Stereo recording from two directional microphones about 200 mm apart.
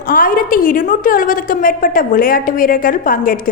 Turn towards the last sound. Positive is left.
turn(degrees=45)  # may be behind; listen again after turning